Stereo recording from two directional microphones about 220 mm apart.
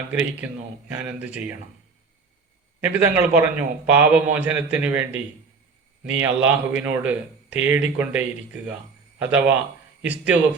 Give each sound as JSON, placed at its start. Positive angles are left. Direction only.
{"t": 0.1, "sound": "speech", "side_deg": -10}
{"t": 2.8, "sound": "speech", "side_deg": -10}